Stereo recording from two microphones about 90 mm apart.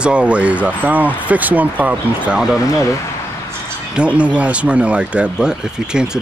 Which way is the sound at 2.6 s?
35° left (ahead or behind).